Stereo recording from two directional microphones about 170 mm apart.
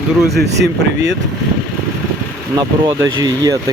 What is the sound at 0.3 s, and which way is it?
Speech, 90° right.